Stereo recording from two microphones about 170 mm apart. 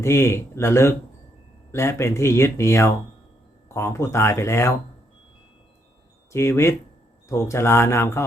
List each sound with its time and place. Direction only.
0.0 s speech: 15° left (ahead or behind)
6.3 s speech: 15° left (ahead or behind)